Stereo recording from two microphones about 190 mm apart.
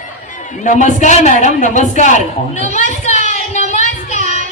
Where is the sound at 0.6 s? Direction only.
40° left (ahead or behind).